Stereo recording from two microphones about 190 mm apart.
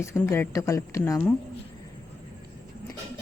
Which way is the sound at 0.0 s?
15° left (ahead or behind).